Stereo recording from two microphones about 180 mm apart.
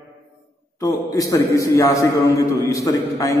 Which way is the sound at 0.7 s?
20° left (ahead or behind).